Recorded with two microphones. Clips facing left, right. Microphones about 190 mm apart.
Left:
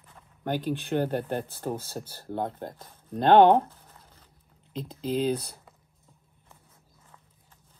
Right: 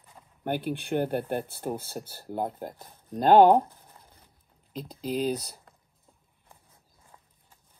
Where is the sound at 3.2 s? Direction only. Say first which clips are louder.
Even; 5° right (ahead or behind).